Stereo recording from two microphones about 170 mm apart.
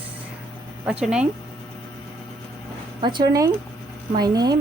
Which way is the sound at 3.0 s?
25° right (ahead or behind).